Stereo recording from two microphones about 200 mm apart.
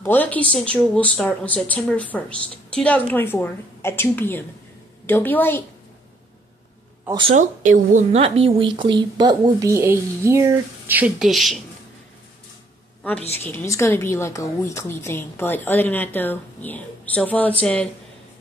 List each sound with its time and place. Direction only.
0.0 s a woman's voice: 10° left (ahead or behind)
7.1 s speech: 25° right (ahead or behind)
7.3 s a woman's voice: 40° right (ahead or behind); by 11.6 s centre (ahead or behind)
13.4 s a woman's voice: 10° left (ahead or behind)